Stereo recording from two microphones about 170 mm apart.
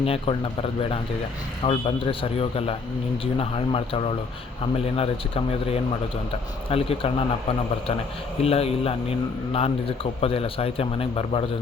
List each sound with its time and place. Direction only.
0.0 s a man's voice: 35° left (ahead or behind)
8.4 s a man's voice: 35° left (ahead or behind)